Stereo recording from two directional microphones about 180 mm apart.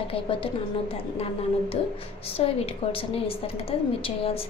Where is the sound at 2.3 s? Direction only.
30° left (ahead or behind).